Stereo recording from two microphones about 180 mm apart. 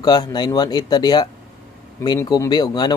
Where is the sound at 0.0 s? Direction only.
25° left (ahead or behind).